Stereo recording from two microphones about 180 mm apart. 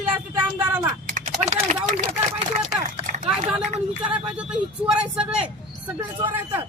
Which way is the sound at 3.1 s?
45° right (ahead or behind).